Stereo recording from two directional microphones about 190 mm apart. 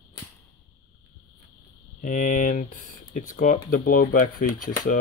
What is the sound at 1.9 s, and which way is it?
Speech, 45° left (ahead or behind).